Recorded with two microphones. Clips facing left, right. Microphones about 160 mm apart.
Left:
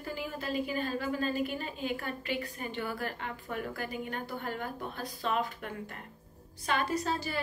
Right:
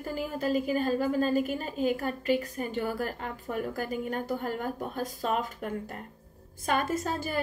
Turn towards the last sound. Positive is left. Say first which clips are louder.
# right 2 dB
turn(degrees=-45)  # may be behind; listen again after turning